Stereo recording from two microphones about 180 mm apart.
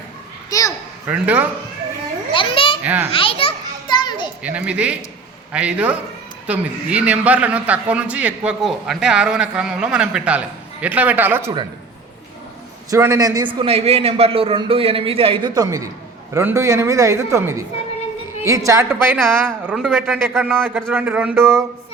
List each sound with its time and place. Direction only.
1.0 s a man's voice: 10° right (ahead or behind)
2.3 s babbling: 30° left (ahead or behind)
2.8 s a man's voice: 10° right (ahead or behind)
3.1 s children playing: 30° left (ahead or behind)
4.4 s a man's voice: 5° right (ahead or behind)
12.9 s a man's voice: 15° right (ahead or behind)
19.1 s a man's voice: centre (ahead or behind)
20.3 s a man's voice: 10° right (ahead or behind)